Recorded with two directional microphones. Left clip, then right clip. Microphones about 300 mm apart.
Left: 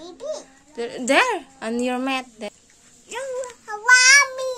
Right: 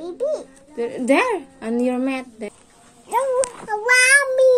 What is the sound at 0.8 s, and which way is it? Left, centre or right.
A woman's voice, left.